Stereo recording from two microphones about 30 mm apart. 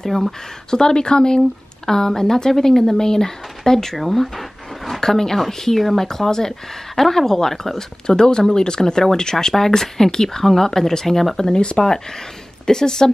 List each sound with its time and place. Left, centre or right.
0.0 s speech: centre
0.7 s speech: left
4.0 s a sound: centre
5.0 s speech: centre
8.2 s speech: left
12.6 s speech: centre